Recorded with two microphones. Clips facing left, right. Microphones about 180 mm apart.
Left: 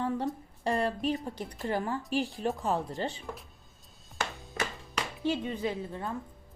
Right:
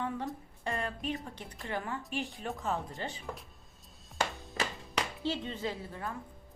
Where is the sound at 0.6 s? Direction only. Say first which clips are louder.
Left 7 dB; 35° left (ahead or behind).